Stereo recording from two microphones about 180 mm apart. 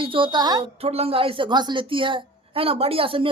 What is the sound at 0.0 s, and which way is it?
Speech, 30° right (ahead or behind).